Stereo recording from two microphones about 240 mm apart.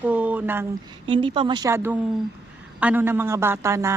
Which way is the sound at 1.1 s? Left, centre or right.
Right.